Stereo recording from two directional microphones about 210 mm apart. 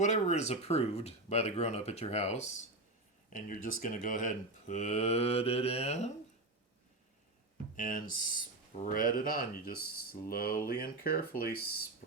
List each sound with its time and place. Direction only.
0.0 s speech: 35° left (ahead or behind)
7.8 s speech: 40° left (ahead or behind)